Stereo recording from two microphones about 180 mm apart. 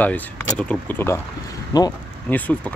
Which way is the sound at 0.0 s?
5° left (ahead or behind).